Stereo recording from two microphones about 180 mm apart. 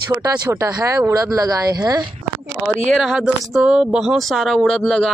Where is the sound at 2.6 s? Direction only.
Centre (ahead or behind).